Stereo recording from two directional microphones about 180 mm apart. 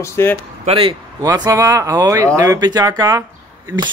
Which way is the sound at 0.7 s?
30° right (ahead or behind).